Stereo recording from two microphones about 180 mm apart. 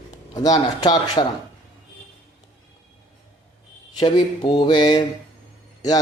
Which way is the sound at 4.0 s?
20° left (ahead or behind).